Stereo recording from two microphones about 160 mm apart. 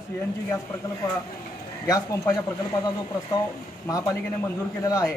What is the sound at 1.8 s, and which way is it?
Speech, 20° left (ahead or behind).